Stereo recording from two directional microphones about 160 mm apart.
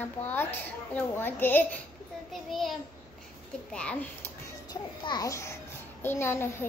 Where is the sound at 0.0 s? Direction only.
10° left (ahead or behind).